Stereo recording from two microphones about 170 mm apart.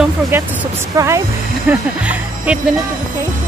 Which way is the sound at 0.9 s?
20° right (ahead or behind).